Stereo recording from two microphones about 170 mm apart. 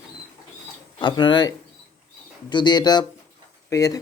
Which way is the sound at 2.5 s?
25° left (ahead or behind).